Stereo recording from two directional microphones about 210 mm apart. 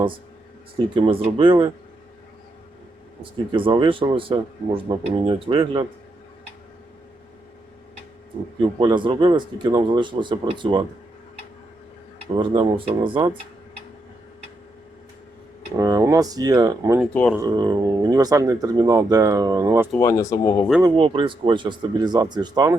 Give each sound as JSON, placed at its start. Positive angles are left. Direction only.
{"t": 0.9, "sound": "a man's voice", "side_deg": -25}
{"t": 3.5, "sound": "a man's voice", "side_deg": -25}
{"t": 8.8, "sound": "a man's voice", "side_deg": -20}
{"t": 12.3, "sound": "a man's voice", "side_deg": -25}
{"t": 15.8, "sound": "speech", "side_deg": -15}
{"t": 20.0, "sound": "speech", "side_deg": 15}
{"t": 20.8, "sound": "a man's voice", "side_deg": -25}